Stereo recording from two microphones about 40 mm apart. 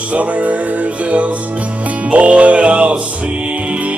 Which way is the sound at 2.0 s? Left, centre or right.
Right.